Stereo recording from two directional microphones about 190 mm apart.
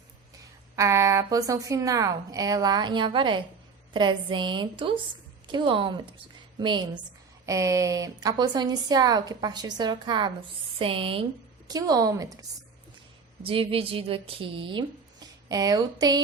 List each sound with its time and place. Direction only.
0.8 s a woman's voice: 15° right (ahead or behind)
13.4 s a woman's voice: 30° right (ahead or behind)